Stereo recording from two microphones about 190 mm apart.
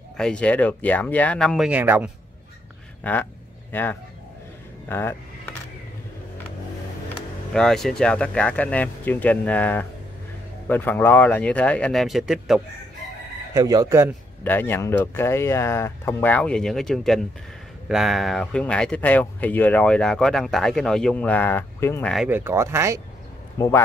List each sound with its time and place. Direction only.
0.2 s speech: 5° left (ahead or behind)
1.7 s speech: 10° right (ahead or behind)
3.0 s speech: 10° left (ahead or behind)
7.5 s speech: 5° left (ahead or behind)
13.5 s speech: 20° right (ahead or behind)
14.4 s speech: 10° left (ahead or behind)
22.1 s speech: 5° right (ahead or behind)
23.6 s speech: 15° left (ahead or behind)